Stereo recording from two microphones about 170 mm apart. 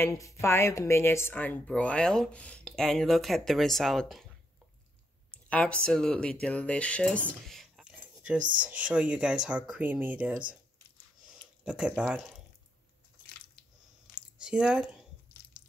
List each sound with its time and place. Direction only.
0.0 s speech: 15° left (ahead or behind); by 4.3 s centre (ahead or behind)
5.3 s a sound: 5° left (ahead or behind)
5.9 s speech: 5° left (ahead or behind); by 10.4 s 10° right (ahead or behind)
11.6 s speech: 5° right (ahead or behind)
14.4 s speech: 5° right (ahead or behind)